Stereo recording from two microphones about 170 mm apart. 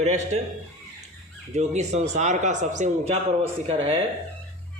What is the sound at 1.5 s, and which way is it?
A man's voice, 40° right (ahead or behind).